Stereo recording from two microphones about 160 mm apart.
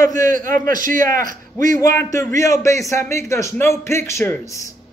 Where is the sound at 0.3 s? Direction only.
60° right (ahead or behind).